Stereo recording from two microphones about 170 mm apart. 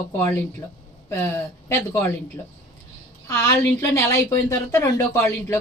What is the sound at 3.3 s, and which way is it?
A woman's voice, 15° left (ahead or behind).